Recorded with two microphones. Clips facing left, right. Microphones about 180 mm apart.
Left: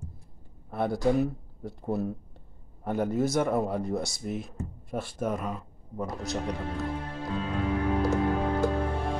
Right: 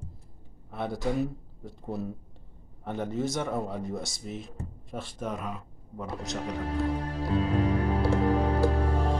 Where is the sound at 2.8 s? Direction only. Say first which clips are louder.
Left 4 dB; 10° left (ahead or behind).